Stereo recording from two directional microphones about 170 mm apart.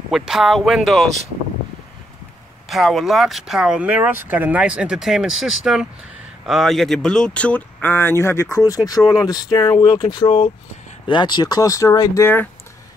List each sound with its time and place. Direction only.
0.1 s speech: centre (ahead or behind)
2.7 s speech: centre (ahead or behind)